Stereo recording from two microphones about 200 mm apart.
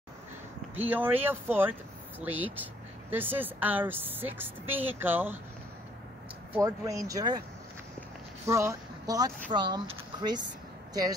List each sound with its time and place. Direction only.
0.8 s speech: 10° right (ahead or behind)
6.5 s speech: 15° right (ahead or behind)
8.5 s speech: 15° right (ahead or behind)